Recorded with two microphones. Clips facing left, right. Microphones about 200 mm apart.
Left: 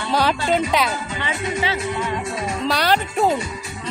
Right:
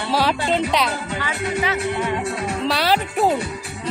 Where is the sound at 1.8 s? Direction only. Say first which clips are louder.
Right 2 dB; 60° right (ahead or behind).